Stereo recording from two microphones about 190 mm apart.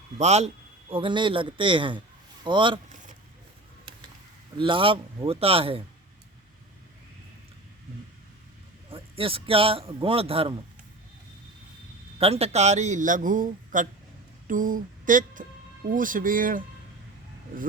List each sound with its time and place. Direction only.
0.2 s speech: 35° right (ahead or behind)
4.5 s speech: 25° right (ahead or behind)
8.9 s speech: 30° right (ahead or behind)
12.2 s a man's voice: 30° right (ahead or behind)
14.4 s a sound: 45° right (ahead or behind)
16.0 s speech: 45° right (ahead or behind)